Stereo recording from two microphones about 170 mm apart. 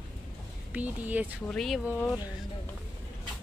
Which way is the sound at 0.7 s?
10° right (ahead or behind).